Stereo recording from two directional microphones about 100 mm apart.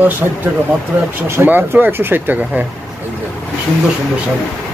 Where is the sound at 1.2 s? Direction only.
20° right (ahead or behind).